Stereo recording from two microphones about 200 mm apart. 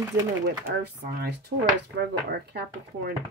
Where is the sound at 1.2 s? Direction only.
55° right (ahead or behind).